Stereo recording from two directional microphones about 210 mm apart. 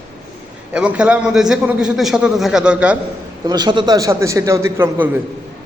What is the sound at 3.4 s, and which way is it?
A man's voice, 20° right (ahead or behind).